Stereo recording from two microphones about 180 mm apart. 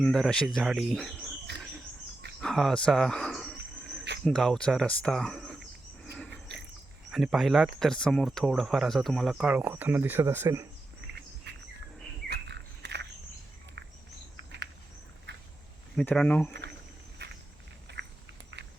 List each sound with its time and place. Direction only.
0.0 s speech: 5° left (ahead or behind)
2.4 s cricket: centre (ahead or behind)
4.2 s speech: 5° left (ahead or behind)
6.1 s cricket: 5° left (ahead or behind)
7.1 s speech: centre (ahead or behind)
11.5 s insect: 70° right (ahead or behind)
12.3 s a sound: 70° right (ahead or behind)
15.3 s a sound: 70° right (ahead or behind)
16.0 s speech: 5° left (ahead or behind)
17.2 s walk: 70° right (ahead or behind)
17.9 s a sound: 70° right (ahead or behind)